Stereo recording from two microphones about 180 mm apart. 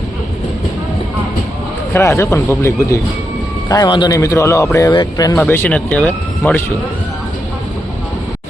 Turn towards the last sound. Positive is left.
turn(degrees=10)  # may be behind; listen again after turning